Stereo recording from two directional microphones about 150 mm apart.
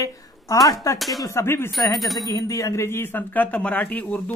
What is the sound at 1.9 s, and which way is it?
Speech, centre (ahead or behind).